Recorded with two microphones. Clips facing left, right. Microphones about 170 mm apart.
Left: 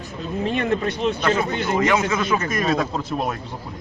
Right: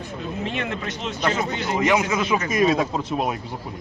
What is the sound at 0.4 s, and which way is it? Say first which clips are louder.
Speech: left 9 dB; 40° left (ahead or behind).